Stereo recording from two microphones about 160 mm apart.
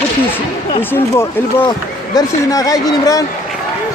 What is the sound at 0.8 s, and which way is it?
Speech, 15° left (ahead or behind).